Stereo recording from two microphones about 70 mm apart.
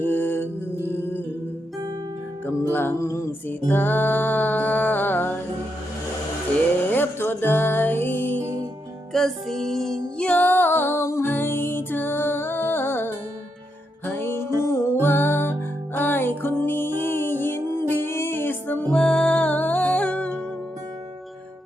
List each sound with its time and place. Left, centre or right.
0.0 s music: left
2.5 s music: left
3.0 s music: left
3.7 s music: left
6.9 s music: left
9.1 s music: centre
10.2 s music: centre; by 14.9 s left
15.0 s music: left
18.9 s music: centre